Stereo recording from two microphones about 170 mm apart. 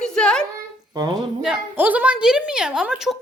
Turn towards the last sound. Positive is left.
turn(degrees=-5)  # may be behind; listen again after turning